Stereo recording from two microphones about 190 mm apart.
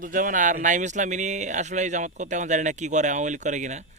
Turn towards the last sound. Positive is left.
turn(degrees=-40)  # may be behind; listen again after turning